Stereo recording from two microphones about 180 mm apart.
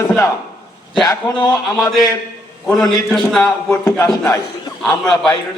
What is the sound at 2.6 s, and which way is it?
Speech, centre (ahead or behind).